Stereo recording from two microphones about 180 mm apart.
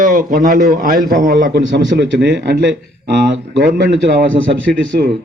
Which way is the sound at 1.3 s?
65° right (ahead or behind).